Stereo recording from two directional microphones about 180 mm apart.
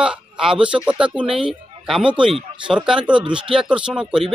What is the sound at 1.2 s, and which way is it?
Speech, 30° right (ahead or behind).